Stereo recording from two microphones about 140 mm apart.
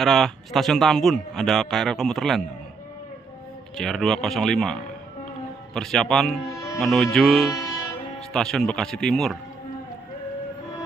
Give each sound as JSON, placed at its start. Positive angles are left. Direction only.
{"t": 0.0, "sound": "a man's voice", "side_deg": 0}
{"t": 3.7, "sound": "a man's voice", "side_deg": 5}
{"t": 5.8, "sound": "a man's voice", "side_deg": 0}
{"t": 6.4, "sound": "speech", "side_deg": 20}
{"t": 6.8, "sound": "a man's voice", "side_deg": 0}